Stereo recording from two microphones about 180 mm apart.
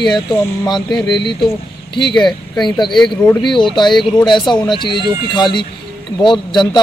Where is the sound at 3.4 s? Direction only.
25° left (ahead or behind).